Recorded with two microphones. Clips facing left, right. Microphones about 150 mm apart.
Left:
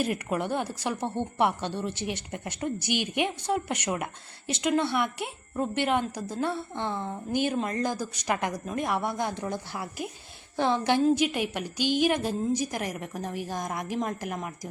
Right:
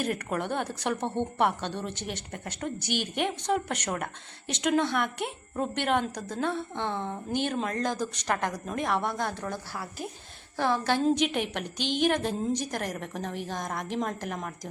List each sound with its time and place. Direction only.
0.0 s a woman's voice: 5° left (ahead or behind)
11.0 s a woman's voice: 5° left (ahead or behind)